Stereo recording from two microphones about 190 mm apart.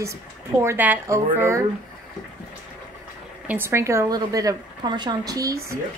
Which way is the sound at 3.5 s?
15° right (ahead or behind).